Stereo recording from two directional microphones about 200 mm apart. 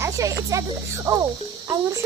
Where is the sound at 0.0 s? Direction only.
15° right (ahead or behind).